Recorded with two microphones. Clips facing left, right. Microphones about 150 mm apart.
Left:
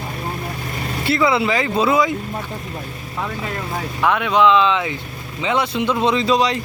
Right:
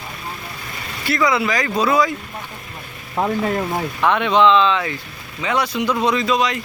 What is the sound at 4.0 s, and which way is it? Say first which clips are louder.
Speech: even; 5° left (ahead or behind).